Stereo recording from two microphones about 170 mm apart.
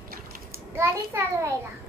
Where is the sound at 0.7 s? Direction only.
15° right (ahead or behind).